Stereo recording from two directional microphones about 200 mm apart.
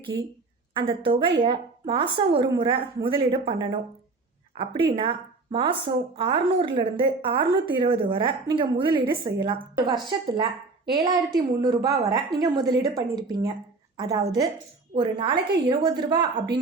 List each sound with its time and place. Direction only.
0.0 s a woman's voice: 25° right (ahead or behind)